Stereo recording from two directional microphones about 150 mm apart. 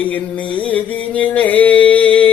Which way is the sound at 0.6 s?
10° left (ahead or behind).